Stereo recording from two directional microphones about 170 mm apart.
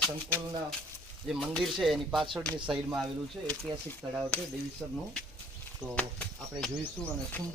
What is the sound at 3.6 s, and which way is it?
Speech, 20° right (ahead or behind).